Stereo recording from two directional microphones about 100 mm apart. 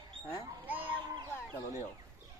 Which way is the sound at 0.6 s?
15° right (ahead or behind).